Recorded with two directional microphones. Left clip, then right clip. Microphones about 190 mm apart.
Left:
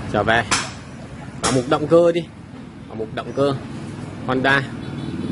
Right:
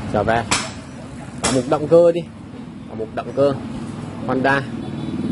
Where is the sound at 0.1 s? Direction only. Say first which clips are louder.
Left 1 dB; 15° left (ahead or behind).